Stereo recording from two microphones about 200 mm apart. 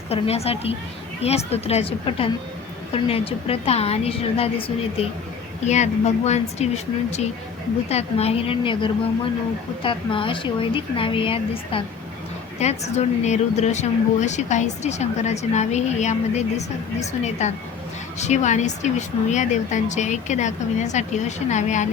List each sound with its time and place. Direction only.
0.1 s a woman's voice: 30° left (ahead or behind)